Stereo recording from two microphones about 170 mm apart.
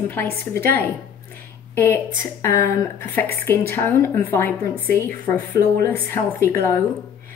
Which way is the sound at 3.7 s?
15° left (ahead or behind).